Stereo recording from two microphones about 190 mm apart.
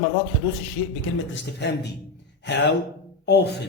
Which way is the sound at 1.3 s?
60° left (ahead or behind).